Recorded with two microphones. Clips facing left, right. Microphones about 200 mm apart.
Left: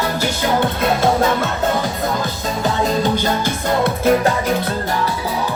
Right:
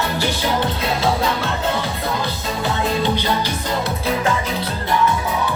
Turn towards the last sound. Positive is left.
turn(degrees=50)  # may be behind; listen again after turning